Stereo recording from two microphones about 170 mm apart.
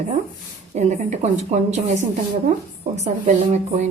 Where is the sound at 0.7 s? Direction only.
45° right (ahead or behind).